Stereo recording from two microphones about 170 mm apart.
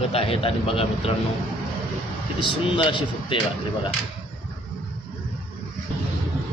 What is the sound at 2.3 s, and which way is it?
Speech, 30° left (ahead or behind).